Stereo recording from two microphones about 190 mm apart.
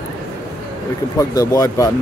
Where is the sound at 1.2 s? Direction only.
20° left (ahead or behind).